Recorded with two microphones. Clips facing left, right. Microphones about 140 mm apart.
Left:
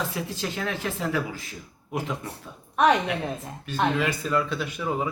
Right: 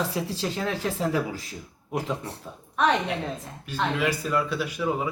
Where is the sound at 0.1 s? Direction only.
35° right (ahead or behind).